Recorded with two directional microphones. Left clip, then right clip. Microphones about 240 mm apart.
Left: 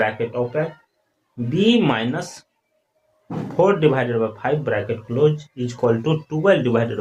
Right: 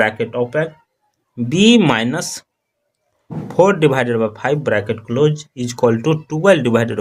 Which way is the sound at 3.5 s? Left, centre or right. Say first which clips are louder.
Right 4 dB; right.